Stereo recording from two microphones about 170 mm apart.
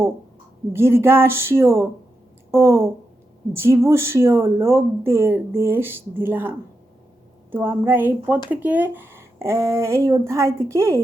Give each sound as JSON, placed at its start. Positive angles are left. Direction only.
{"t": 0.7, "sound": "speech", "side_deg": -15}